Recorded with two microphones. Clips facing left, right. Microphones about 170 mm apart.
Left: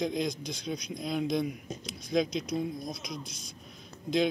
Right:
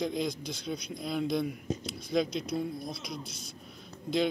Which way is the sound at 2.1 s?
5° right (ahead or behind).